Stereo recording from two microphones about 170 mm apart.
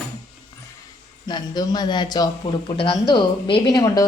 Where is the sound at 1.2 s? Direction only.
25° left (ahead or behind).